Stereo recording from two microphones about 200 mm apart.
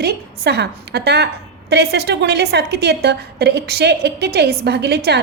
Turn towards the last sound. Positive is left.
turn(degrees=-55)  # may be behind; listen again after turning